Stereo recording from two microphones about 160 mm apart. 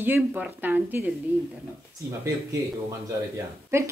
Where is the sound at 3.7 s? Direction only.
15° right (ahead or behind).